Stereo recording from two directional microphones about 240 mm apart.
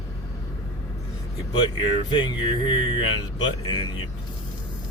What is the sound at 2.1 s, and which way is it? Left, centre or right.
Speech, centre.